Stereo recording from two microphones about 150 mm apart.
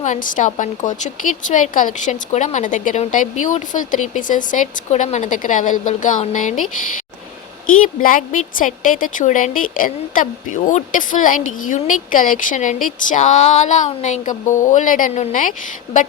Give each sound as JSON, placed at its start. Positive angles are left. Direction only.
{"t": 0.0, "sound": "a woman's voice", "side_deg": 60}
{"t": 7.8, "sound": "a woman's voice", "side_deg": 65}